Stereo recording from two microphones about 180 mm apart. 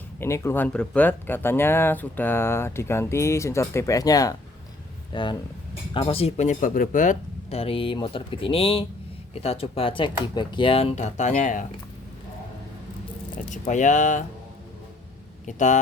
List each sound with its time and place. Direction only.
0.2 s speech: 15° left (ahead or behind); by 11.6 s 45° left (ahead or behind)
13.5 s speech: 45° left (ahead or behind)
15.4 s speech: 40° left (ahead or behind)